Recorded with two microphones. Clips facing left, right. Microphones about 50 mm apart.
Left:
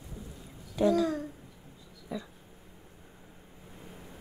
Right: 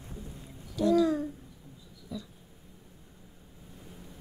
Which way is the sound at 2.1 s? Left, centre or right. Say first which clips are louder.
Left 2 dB; left.